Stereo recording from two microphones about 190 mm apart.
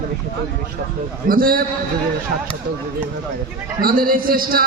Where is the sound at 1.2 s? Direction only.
50° right (ahead or behind).